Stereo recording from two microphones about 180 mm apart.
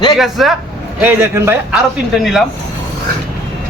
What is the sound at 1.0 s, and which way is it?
Speech, 10° right (ahead or behind).